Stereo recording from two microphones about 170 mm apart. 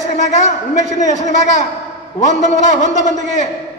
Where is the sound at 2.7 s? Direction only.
45° left (ahead or behind).